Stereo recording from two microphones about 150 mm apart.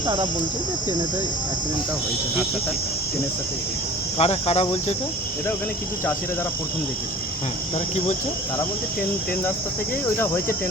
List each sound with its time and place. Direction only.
0.0 s cricket: 30° right (ahead or behind)
4.2 s cricket: 45° left (ahead or behind)